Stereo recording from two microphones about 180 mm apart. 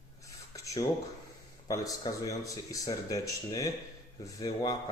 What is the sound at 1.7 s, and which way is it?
Speech, 20° left (ahead or behind).